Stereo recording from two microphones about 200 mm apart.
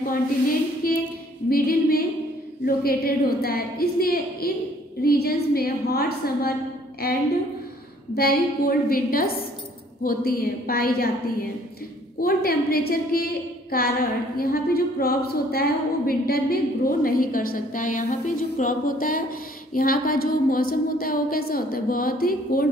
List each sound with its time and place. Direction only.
0.8 s child singing: 45° left (ahead or behind)
1.5 s a woman's voice: 50° left (ahead or behind)
8.1 s a woman's voice: 50° left (ahead or behind)
12.2 s a woman's voice: 50° left (ahead or behind)